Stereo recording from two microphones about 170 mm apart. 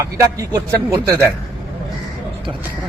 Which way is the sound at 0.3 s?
20° right (ahead or behind).